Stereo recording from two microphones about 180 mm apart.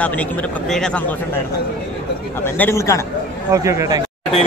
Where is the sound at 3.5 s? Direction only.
15° right (ahead or behind).